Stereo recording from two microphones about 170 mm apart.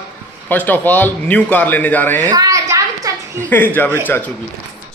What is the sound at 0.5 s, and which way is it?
Speech, 10° left (ahead or behind).